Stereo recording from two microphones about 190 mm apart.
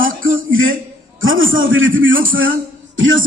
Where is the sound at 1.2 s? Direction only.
90° right.